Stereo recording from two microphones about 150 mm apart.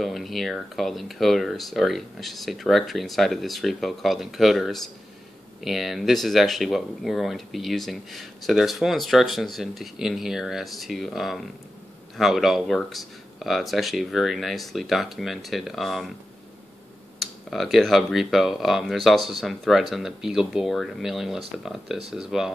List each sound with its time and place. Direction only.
0.0 s speech: centre (ahead or behind)
17.2 s speech: centre (ahead or behind)